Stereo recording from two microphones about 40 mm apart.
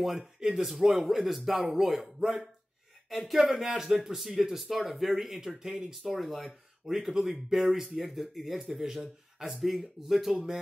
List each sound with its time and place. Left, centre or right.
0.0 s speech: centre
0.4 s speech: centre
3.1 s speech: centre
3.7 s speech: centre
4.2 s speech: centre
10.3 s speech: centre